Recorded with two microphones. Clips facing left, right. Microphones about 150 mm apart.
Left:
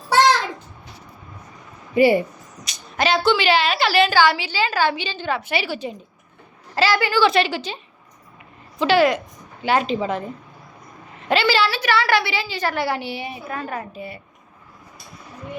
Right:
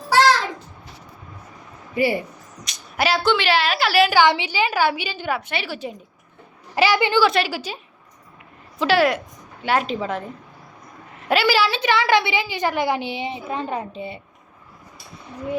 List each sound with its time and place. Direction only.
2.0 s speech: 20° left (ahead or behind)
2.6 s a woman's voice: 5° right (ahead or behind)
4.2 s a woman's voice: 20° right (ahead or behind)
5.4 s a woman's voice: 5° left (ahead or behind)
6.7 s a woman's voice: 15° right (ahead or behind)
7.2 s a woman's voice: 5° right (ahead or behind)
8.8 s a woman's voice: centre (ahead or behind)
11.3 s a woman's voice: 10° right (ahead or behind)